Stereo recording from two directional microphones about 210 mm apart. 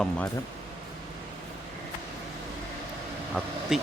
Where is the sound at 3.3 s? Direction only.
Centre (ahead or behind).